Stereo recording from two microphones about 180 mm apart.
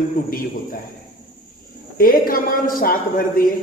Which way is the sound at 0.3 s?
50° left (ahead or behind).